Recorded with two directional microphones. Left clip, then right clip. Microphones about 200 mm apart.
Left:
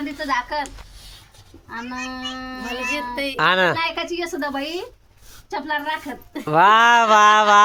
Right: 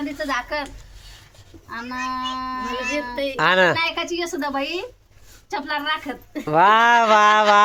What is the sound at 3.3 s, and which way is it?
A woman's voice, centre (ahead or behind).